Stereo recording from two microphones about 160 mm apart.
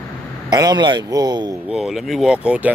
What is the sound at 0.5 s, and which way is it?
A man's voice, 25° right (ahead or behind).